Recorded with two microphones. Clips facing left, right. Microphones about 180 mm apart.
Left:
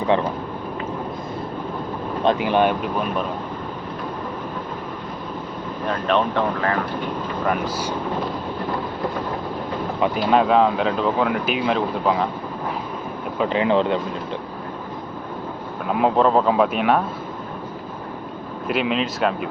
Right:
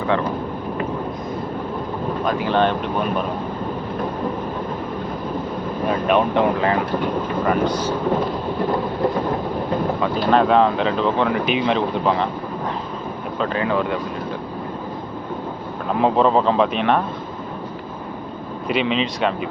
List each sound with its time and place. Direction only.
2.2 s speech: 15° left (ahead or behind)
5.9 s speech: 10° right (ahead or behind)
7.4 s speech: 5° left (ahead or behind)
10.2 s speech: 5° left (ahead or behind)
13.4 s speech: 20° left (ahead or behind)
15.9 s speech: 5° left (ahead or behind)
18.7 s speech: centre (ahead or behind)